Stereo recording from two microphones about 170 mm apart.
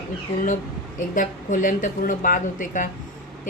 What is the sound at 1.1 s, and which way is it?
A woman's voice, 50° left (ahead or behind).